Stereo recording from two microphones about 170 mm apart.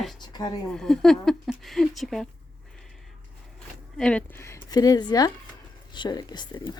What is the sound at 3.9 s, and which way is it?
Speech, 5° left (ahead or behind).